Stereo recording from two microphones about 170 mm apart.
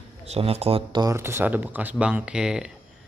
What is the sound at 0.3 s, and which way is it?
Speech, 35° right (ahead or behind).